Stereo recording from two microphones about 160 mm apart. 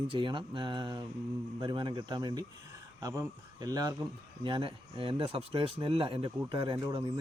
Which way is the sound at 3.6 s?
25° right (ahead or behind).